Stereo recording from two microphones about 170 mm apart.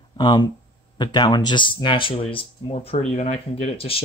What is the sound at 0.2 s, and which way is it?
Speech, 25° left (ahead or behind).